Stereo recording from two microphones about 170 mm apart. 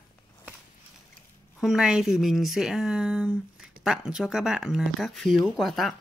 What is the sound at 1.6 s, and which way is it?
Speech, centre (ahead or behind).